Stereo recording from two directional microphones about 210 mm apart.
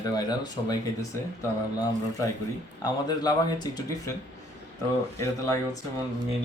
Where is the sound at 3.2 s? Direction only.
20° left (ahead or behind).